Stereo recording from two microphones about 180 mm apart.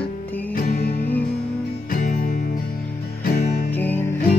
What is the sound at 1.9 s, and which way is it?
Music, 45° left (ahead or behind).